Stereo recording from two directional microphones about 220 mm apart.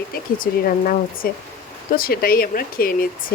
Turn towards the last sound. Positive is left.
turn(degrees=40)  # may be behind; listen again after turning